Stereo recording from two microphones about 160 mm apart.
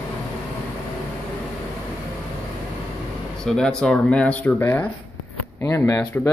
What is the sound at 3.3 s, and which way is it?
Speech, 5° left (ahead or behind).